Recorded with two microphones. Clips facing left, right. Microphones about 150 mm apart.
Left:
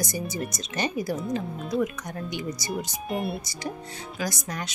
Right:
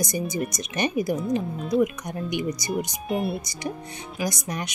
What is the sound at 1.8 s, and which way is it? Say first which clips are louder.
Speech: right 4 dB; 15° right (ahead or behind).